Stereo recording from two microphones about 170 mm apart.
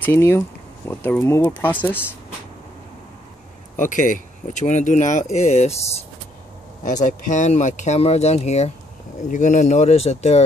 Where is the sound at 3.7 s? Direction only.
50° left (ahead or behind).